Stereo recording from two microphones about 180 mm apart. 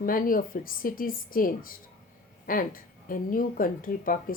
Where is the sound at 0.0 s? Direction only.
50° left (ahead or behind).